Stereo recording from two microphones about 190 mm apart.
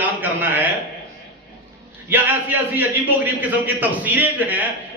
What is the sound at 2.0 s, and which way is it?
A man's voice, 10° right (ahead or behind).